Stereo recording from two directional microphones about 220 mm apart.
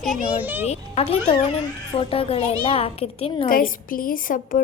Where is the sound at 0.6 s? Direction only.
30° left (ahead or behind).